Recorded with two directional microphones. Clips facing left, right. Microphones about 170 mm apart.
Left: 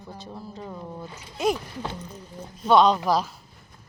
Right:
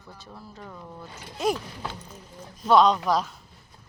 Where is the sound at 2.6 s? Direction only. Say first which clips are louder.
Left 1 dB; centre (ahead or behind).